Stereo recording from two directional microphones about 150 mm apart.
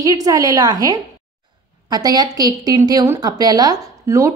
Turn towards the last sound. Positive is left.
turn(degrees=-20)  # may be behind; listen again after turning